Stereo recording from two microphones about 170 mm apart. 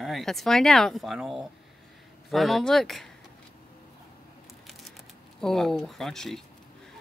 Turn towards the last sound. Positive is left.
turn(degrees=0)  # may be behind; listen again after turning